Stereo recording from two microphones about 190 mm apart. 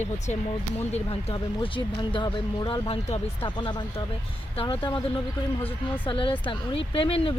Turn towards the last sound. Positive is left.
turn(degrees=30)  # may be behind; listen again after turning